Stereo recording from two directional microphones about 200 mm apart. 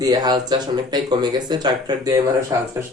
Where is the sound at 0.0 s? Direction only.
20° right (ahead or behind).